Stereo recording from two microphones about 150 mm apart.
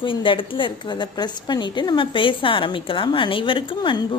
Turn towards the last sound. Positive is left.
turn(degrees=30)  # may be behind; listen again after turning